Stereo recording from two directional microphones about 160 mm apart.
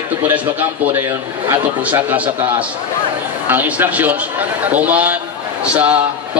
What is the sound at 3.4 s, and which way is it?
A man's voice, 10° right (ahead or behind).